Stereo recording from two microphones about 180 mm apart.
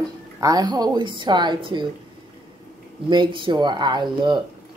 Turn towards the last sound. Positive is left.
turn(degrees=-25)  # may be behind; listen again after turning